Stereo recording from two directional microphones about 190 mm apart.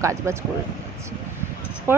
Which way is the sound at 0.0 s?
15° right (ahead or behind).